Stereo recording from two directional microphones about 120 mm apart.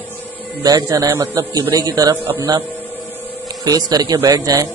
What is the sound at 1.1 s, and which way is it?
Speech, 20° right (ahead or behind).